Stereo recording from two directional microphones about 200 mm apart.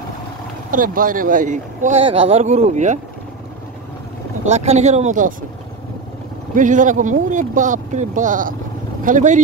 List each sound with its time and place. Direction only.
0.7 s speech: 45° right (ahead or behind)
4.5 s speech: 35° right (ahead or behind)
6.5 s speech: 40° right (ahead or behind)